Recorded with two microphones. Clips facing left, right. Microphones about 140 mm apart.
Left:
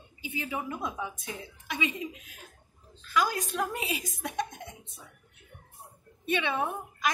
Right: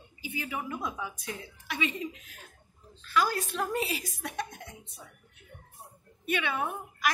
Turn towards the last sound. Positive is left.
turn(degrees=20)  # may be behind; listen again after turning